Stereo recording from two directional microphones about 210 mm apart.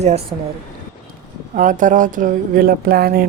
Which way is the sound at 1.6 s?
40° right (ahead or behind).